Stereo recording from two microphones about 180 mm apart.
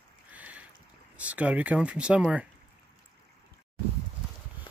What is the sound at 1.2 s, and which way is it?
Speech, 10° right (ahead or behind).